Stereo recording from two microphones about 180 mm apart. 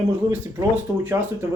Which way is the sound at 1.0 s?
10° right (ahead or behind).